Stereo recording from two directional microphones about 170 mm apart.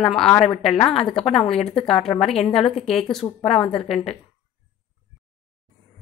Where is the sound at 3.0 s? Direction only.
Centre (ahead or behind).